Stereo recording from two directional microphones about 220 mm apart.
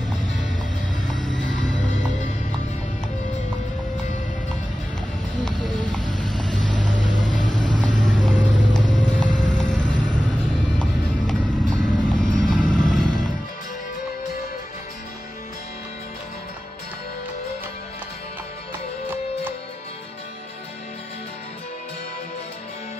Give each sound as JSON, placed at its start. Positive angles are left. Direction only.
{"t": 1.8, "sound": "music", "side_deg": 35}
{"t": 5.9, "sound": "vehicle", "side_deg": 5}
{"t": 7.5, "sound": "vehicle", "side_deg": 20}
{"t": 7.8, "sound": "vehicle", "side_deg": 5}